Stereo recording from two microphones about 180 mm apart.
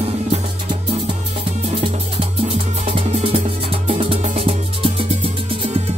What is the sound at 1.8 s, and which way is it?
Music, 30° right (ahead or behind).